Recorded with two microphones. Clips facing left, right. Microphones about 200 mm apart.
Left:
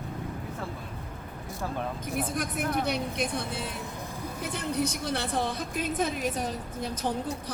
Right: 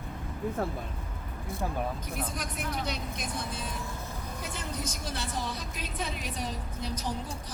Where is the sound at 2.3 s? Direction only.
55° left (ahead or behind).